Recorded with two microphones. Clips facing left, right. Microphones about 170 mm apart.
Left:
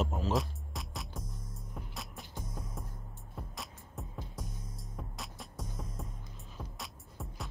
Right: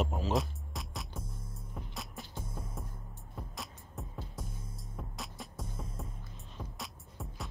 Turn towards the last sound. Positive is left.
turn(degrees=0)  # may be behind; listen again after turning